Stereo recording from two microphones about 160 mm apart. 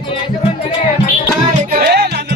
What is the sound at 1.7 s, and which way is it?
Music, 75° right (ahead or behind).